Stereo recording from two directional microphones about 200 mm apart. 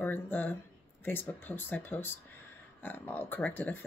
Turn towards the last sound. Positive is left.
turn(degrees=10)  # may be behind; listen again after turning